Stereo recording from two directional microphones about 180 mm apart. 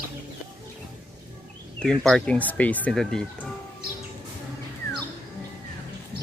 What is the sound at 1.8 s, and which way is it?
Speech, 5° left (ahead or behind).